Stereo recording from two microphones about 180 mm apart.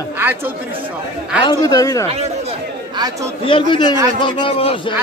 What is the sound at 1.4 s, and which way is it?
Speech, 20° left (ahead or behind).